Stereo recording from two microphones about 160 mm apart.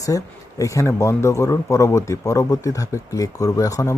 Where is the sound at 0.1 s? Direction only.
20° left (ahead or behind).